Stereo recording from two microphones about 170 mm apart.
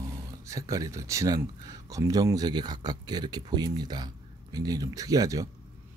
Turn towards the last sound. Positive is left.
turn(degrees=-20)  # may be behind; listen again after turning